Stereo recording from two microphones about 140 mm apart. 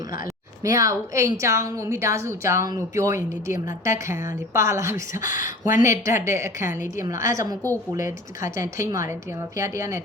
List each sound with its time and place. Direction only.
0.6 s a woman's voice: 25° right (ahead or behind)
5.1 s speech: 65° left (ahead or behind)
5.8 s a woman's voice: 20° right (ahead or behind)